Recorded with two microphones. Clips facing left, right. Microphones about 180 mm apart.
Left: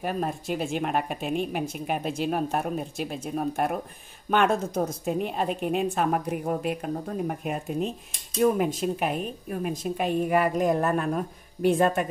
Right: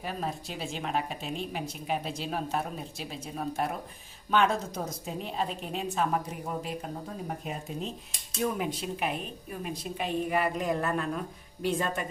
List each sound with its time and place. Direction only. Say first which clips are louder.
0.0 s a woman's voice: left 6 dB; 55° left (ahead or behind)